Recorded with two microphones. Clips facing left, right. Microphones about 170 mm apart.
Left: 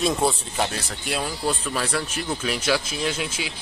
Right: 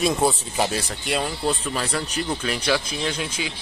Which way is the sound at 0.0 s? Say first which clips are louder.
Right 1 dB; 5° right (ahead or behind).